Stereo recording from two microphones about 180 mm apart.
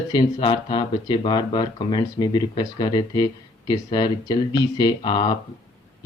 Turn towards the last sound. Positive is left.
turn(degrees=25)  # may be behind; listen again after turning